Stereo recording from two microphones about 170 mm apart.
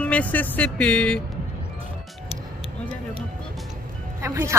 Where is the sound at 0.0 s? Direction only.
10° left (ahead or behind).